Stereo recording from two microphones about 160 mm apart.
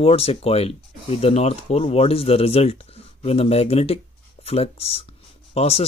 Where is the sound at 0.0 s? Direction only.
40° left (ahead or behind).